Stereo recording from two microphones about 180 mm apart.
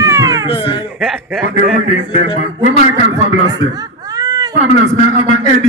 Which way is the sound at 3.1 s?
20° right (ahead or behind).